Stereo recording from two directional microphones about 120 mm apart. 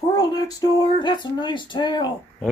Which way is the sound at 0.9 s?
40° left (ahead or behind).